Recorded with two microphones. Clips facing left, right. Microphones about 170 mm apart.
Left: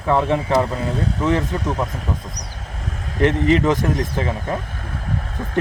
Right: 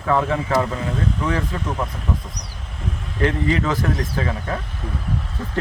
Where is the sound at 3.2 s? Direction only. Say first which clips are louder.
Left 4 dB; 20° left (ahead or behind).